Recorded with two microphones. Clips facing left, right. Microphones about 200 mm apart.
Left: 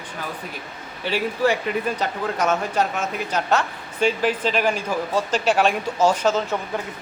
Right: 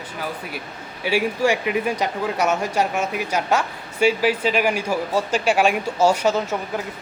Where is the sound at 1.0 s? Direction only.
10° right (ahead or behind).